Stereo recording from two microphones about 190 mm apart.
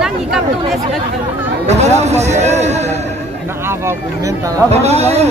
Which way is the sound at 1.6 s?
35° right (ahead or behind).